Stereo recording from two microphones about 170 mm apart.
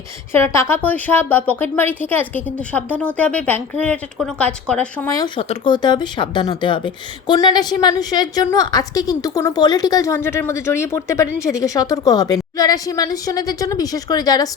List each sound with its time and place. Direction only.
0.3 s a woman's voice: 15° left (ahead or behind)
5.0 s speech: 25° left (ahead or behind)